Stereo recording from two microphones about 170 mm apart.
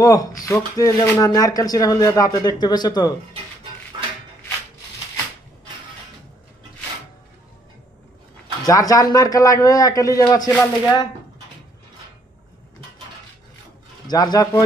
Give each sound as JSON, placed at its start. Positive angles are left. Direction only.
{"t": 0.0, "sound": "speech", "side_deg": 20}
{"t": 8.6, "sound": "speech", "side_deg": 20}
{"t": 14.0, "sound": "speech", "side_deg": 20}